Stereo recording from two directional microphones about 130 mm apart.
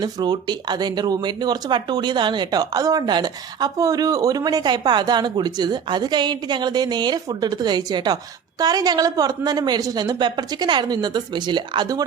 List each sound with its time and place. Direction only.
0.0 s speech: 35° right (ahead or behind)